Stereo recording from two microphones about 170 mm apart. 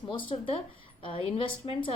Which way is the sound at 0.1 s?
30° left (ahead or behind).